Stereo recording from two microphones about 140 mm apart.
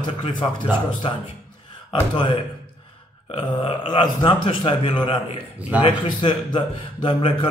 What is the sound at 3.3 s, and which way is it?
A man's voice, 40° left (ahead or behind).